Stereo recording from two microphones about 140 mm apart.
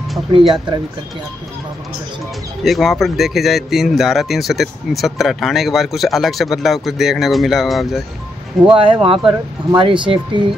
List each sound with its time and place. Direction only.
0.3 s speech: 35° right (ahead or behind)
2.6 s speech: centre (ahead or behind)
8.6 s speech: 35° right (ahead or behind)